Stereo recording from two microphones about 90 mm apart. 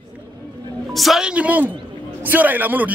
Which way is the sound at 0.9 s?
5° right (ahead or behind).